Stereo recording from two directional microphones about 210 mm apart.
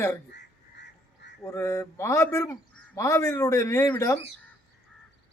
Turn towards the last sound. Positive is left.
turn(degrees=15)  # may be behind; listen again after turning